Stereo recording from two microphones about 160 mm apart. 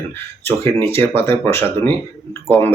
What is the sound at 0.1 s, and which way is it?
Speech, 15° left (ahead or behind).